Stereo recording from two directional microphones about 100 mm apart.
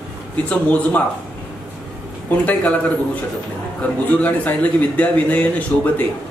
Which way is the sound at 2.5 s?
10° left (ahead or behind).